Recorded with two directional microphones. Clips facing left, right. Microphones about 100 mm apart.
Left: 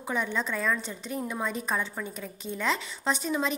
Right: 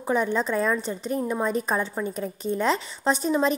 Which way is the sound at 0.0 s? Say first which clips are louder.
Right 6 dB; 40° right (ahead or behind).